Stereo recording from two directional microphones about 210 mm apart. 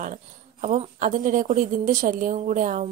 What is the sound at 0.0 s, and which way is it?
A woman's voice, 35° right (ahead or behind).